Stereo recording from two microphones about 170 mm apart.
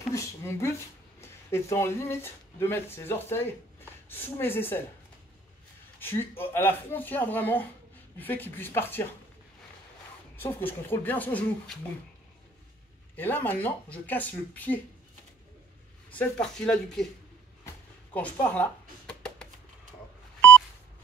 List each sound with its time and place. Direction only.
0.1 s speech: 15° left (ahead or behind)
5.9 s speech: 15° left (ahead or behind)
10.3 s speech: 10° left (ahead or behind)
13.1 s speech: 10° left (ahead or behind)
16.1 s speech: 5° left (ahead or behind)
18.1 s a sound: 10° left (ahead or behind)
20.3 s beep: 10° left (ahead or behind)